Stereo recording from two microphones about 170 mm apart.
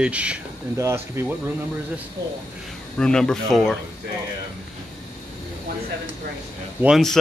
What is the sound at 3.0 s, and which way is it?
Speech, 5° left (ahead or behind).